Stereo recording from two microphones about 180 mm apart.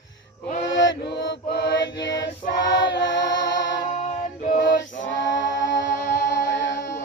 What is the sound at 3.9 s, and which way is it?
Music, 40° left (ahead or behind).